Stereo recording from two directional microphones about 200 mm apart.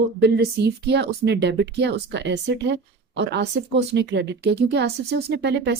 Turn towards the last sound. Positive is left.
turn(degrees=-55)  # may be behind; listen again after turning